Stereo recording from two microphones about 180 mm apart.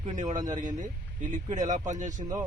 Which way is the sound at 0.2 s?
40° right (ahead or behind).